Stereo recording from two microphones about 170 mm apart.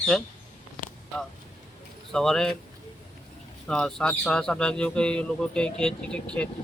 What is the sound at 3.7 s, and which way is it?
Speech, 5° left (ahead or behind).